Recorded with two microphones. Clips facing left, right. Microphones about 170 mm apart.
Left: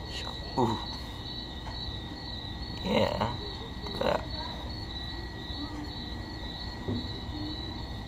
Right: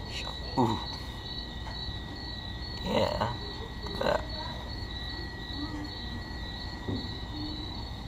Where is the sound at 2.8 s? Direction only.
5° left (ahead or behind).